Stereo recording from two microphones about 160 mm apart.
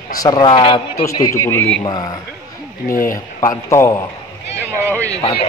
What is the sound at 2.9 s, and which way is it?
Speech, 60° left (ahead or behind).